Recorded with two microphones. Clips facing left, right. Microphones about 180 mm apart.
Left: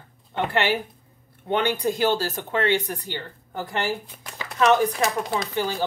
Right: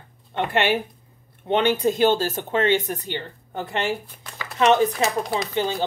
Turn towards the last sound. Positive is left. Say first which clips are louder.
# right 2 dB
turn(degrees=-20)  # may be behind; listen again after turning